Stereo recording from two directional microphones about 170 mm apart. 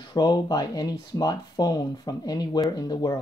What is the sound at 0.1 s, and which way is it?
Speech, 25° left (ahead or behind).